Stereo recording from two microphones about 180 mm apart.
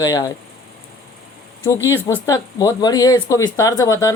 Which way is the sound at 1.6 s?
20° left (ahead or behind).